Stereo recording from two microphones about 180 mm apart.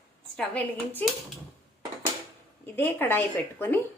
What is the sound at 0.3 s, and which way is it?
Speech, 5° left (ahead or behind).